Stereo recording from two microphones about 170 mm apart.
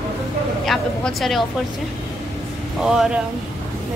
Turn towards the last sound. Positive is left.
turn(degrees=0)  # may be behind; listen again after turning